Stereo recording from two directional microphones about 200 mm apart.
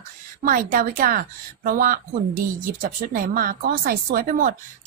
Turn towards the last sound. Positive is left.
turn(degrees=-40)  # may be behind; listen again after turning